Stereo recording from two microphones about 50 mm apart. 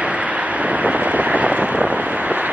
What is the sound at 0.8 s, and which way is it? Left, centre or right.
Vehicle, right.